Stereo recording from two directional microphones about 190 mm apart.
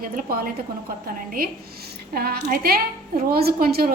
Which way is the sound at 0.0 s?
50° right (ahead or behind).